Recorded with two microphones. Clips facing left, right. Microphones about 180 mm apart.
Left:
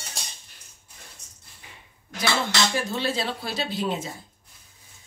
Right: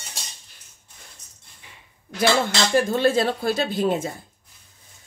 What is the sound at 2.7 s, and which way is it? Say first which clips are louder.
Speech: right 8 dB; 50° right (ahead or behind).